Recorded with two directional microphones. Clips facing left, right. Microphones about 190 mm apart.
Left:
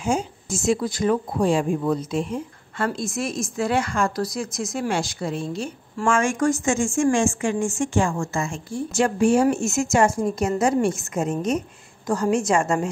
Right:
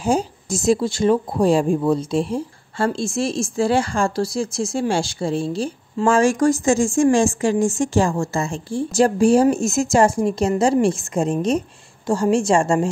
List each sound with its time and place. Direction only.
0.0 s a woman's voice: 35° right (ahead or behind)